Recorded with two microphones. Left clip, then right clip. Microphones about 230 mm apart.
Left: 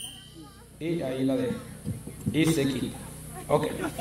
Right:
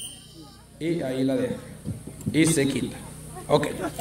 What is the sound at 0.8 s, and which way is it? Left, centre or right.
Speech, right.